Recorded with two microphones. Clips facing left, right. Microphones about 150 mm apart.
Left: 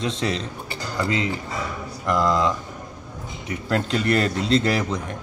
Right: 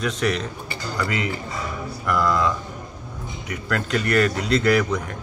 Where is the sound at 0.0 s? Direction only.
25° left (ahead or behind).